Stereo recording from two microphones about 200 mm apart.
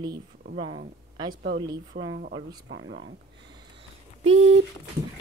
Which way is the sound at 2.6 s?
70° right (ahead or behind).